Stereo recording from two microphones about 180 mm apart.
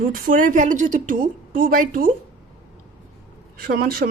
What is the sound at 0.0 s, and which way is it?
A woman's voice, 50° right (ahead or behind).